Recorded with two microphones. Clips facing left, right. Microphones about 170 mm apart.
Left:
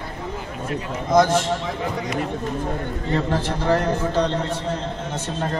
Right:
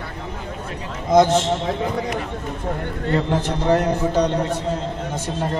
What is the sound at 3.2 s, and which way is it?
A man's voice, 20° right (ahead or behind).